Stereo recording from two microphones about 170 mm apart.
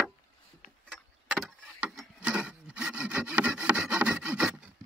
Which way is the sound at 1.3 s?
5° right (ahead or behind).